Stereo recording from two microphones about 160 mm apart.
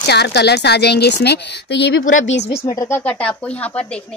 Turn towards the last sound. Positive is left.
turn(degrees=10)  # may be behind; listen again after turning